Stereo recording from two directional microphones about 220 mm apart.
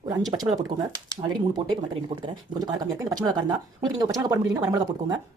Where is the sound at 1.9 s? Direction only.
20° right (ahead or behind).